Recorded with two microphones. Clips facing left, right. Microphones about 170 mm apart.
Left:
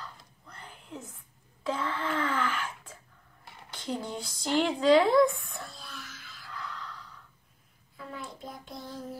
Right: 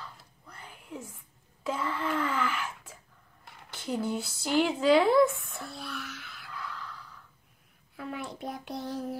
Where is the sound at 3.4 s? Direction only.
5° right (ahead or behind).